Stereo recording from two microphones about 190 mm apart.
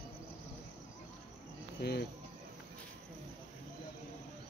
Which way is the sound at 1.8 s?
60° left (ahead or behind).